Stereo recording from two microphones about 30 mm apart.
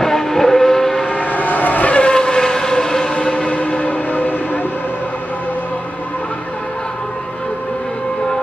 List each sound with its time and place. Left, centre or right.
0.0 s vehicle: centre
1.2 s vehicle: left
2.1 s vehicle: left
3.4 s train: left